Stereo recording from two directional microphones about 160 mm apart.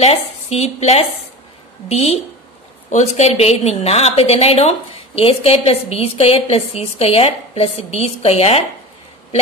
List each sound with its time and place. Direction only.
0.0 s a woman's voice: 40° left (ahead or behind)